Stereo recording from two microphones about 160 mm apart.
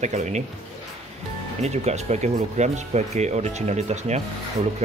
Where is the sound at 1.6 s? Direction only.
45° right (ahead or behind).